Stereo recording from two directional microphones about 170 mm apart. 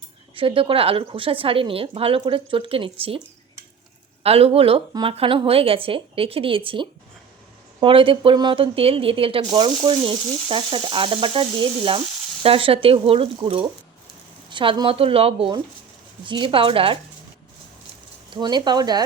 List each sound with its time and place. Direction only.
0.3 s speech: 30° right (ahead or behind)
4.2 s speech: 35° right (ahead or behind)
18.3 s speech: 25° right (ahead or behind)